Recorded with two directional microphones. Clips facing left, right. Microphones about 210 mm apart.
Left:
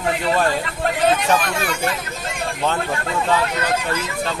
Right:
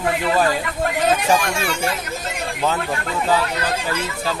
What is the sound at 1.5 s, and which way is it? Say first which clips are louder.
Speech: even; 25° right (ahead or behind).